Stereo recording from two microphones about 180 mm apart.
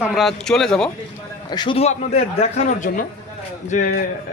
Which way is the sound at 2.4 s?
45° left (ahead or behind).